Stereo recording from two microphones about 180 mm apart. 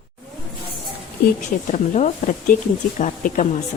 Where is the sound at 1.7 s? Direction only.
40° left (ahead or behind).